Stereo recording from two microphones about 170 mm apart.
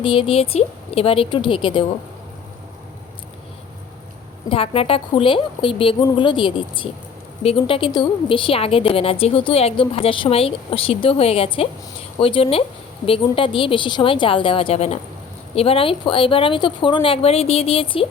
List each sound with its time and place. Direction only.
0.0 s a woman's voice: 30° left (ahead or behind)
4.4 s a woman's voice: 35° left (ahead or behind)